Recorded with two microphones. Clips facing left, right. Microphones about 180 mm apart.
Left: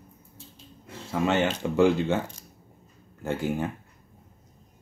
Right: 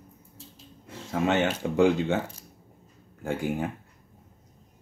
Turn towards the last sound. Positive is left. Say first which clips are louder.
# left 1 dB
turn(degrees=-15)  # may be behind; listen again after turning